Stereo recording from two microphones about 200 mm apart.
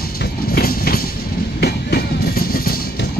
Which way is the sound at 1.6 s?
50° left (ahead or behind).